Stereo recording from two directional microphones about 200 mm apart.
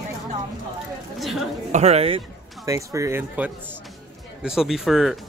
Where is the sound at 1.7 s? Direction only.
35° right (ahead or behind).